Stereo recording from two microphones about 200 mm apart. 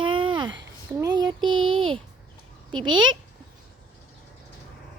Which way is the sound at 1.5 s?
90° right.